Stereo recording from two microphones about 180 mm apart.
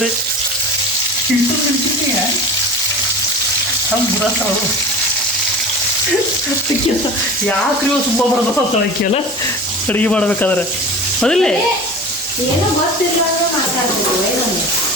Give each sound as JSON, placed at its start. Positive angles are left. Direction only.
{"t": 9.9, "sound": "speech", "side_deg": 5}